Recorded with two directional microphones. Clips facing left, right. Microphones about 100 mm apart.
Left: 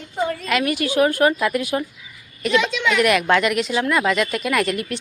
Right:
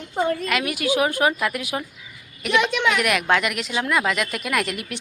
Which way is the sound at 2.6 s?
55° right (ahead or behind).